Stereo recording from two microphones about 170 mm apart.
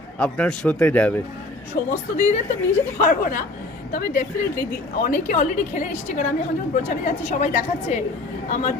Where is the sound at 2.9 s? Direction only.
55° left (ahead or behind).